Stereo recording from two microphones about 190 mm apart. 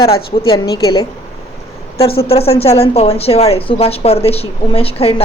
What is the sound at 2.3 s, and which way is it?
A woman's voice, 30° left (ahead or behind).